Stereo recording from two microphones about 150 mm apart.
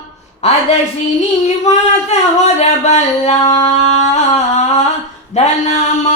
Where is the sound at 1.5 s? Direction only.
50° left (ahead or behind).